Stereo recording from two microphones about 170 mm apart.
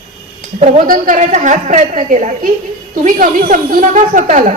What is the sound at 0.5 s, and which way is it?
A woman's voice, 40° right (ahead or behind).